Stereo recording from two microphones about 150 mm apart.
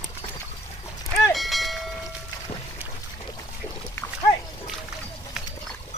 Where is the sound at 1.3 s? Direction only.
Centre (ahead or behind).